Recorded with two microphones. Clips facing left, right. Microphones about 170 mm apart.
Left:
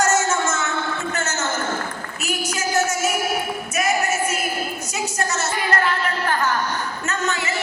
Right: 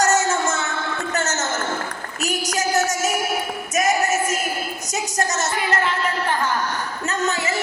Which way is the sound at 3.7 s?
40° right (ahead or behind).